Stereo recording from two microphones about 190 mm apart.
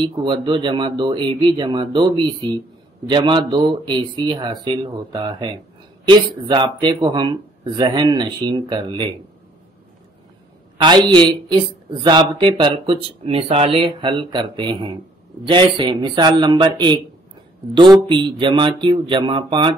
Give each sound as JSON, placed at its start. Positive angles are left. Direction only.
{"t": 0.0, "sound": "speech", "side_deg": -25}
{"t": 10.8, "sound": "speech", "side_deg": -25}